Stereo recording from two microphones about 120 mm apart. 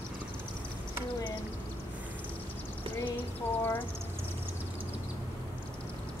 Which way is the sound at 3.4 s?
20° left (ahead or behind).